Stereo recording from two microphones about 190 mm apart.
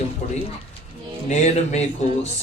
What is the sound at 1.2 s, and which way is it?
Speech, 35° left (ahead or behind).